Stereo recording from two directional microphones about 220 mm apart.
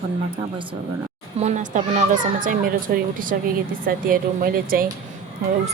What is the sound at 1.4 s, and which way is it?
A woman's voice, 30° right (ahead or behind).